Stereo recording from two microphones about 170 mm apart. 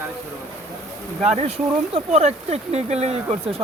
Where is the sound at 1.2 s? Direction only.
40° right (ahead or behind).